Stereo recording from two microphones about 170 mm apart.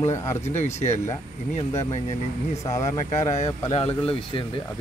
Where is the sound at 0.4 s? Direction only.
40° left (ahead or behind).